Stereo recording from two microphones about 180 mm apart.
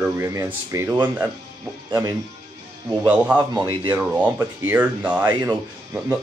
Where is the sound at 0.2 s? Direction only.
15° right (ahead or behind).